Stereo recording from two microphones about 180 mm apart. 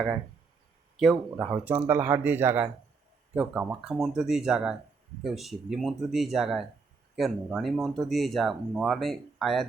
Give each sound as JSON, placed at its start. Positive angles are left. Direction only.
{"t": 1.1, "sound": "speech", "side_deg": -15}